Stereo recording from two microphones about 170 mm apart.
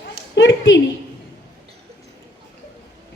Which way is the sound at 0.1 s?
90° left.